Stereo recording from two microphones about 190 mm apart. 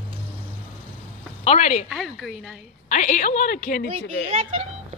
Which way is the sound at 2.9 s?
40° left (ahead or behind).